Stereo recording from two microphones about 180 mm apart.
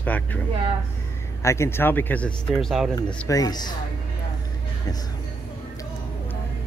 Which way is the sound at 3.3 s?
20° left (ahead or behind).